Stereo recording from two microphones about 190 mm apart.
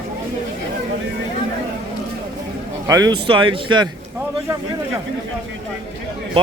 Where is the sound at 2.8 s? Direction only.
20° right (ahead or behind).